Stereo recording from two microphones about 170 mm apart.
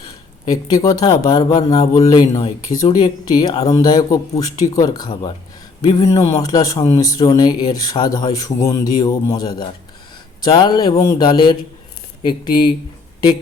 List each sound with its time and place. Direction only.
0.5 s speech: 20° left (ahead or behind)